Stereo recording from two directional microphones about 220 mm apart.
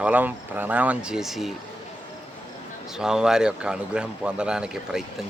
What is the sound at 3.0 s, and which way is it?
Speech, 5° right (ahead or behind).